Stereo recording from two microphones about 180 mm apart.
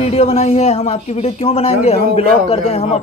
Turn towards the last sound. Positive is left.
turn(degrees=35)  # may be behind; listen again after turning